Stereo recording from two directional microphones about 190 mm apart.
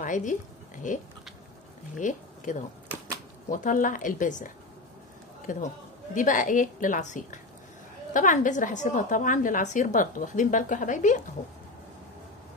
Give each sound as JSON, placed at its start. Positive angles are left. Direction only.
{"t": 0.0, "sound": "a woman's voice", "side_deg": 40}
{"t": 5.5, "sound": "a woman's voice", "side_deg": 40}